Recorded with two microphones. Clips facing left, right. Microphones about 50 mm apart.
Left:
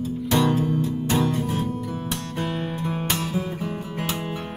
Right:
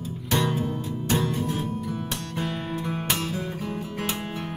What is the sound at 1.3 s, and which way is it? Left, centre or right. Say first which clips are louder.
Music: left 2 dB; left.